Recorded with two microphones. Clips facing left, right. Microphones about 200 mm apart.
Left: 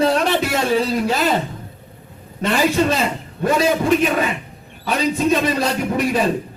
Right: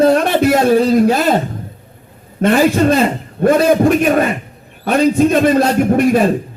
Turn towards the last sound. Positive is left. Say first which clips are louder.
# right 7 dB
turn(degrees=-50)  # may be behind; listen again after turning